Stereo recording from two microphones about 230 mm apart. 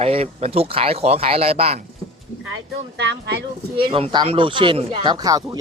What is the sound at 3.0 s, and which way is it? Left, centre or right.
Speech, right.